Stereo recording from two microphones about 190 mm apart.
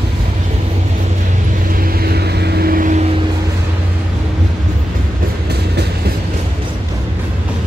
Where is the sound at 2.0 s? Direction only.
55° right (ahead or behind).